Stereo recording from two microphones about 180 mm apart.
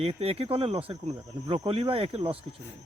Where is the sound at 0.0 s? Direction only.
35° right (ahead or behind).